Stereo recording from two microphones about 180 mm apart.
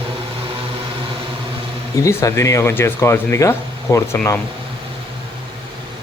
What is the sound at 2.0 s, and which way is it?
Speech, 15° left (ahead or behind).